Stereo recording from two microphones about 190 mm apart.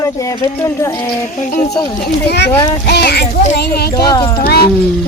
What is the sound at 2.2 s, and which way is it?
A child's voice, 60° left (ahead or behind).